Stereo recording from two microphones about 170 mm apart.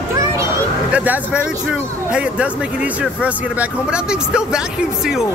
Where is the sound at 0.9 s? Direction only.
10° right (ahead or behind).